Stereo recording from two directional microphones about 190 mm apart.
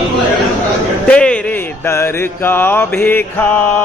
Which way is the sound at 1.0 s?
5° left (ahead or behind).